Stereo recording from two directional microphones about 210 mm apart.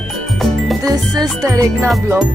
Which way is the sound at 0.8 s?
15° right (ahead or behind).